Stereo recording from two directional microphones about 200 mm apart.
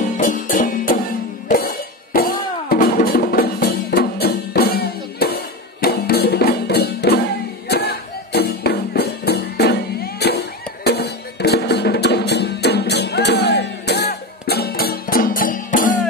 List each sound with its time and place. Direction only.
0.2 s music: 40° left (ahead or behind)
2.1 s music: 45° left (ahead or behind)